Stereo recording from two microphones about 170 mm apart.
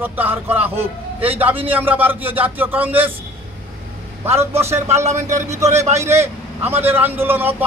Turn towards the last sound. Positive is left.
turn(degrees=-10)  # may be behind; listen again after turning